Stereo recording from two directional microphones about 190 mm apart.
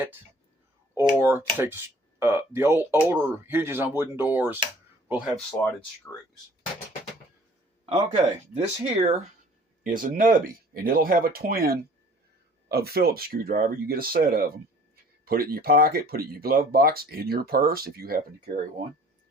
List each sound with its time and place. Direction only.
0.9 s speech: 10° right (ahead or behind)
5.5 s speech: 5° left (ahead or behind)
7.9 s speech: 30° right (ahead or behind)
9.8 s speech: 45° right (ahead or behind)